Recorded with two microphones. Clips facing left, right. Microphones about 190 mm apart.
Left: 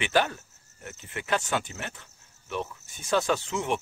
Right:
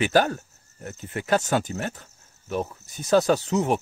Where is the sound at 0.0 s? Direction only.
40° right (ahead or behind).